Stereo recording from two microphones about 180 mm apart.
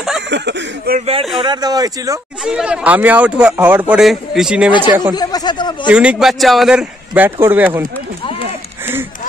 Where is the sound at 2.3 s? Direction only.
5° right (ahead or behind).